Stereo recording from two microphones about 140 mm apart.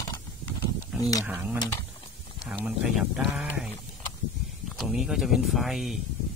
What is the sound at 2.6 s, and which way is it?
Speech, 5° right (ahead or behind).